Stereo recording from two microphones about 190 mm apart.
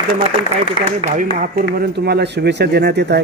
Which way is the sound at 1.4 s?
50° right (ahead or behind).